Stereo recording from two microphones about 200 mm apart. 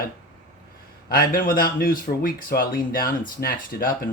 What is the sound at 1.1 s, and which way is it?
Speech, 45° left (ahead or behind).